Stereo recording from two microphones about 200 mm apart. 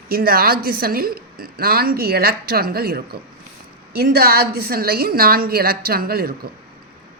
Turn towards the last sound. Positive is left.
turn(degrees=-50)  # may be behind; listen again after turning